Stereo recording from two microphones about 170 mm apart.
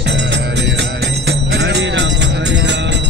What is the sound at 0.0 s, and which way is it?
Music, 90° right.